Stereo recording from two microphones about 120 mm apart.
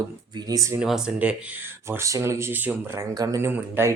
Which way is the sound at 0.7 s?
5° right (ahead or behind).